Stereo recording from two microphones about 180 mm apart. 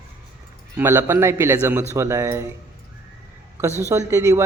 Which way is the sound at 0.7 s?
15° right (ahead or behind).